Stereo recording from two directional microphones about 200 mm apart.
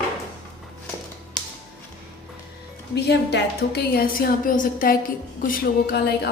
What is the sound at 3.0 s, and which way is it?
A woman's voice, 55° left (ahead or behind).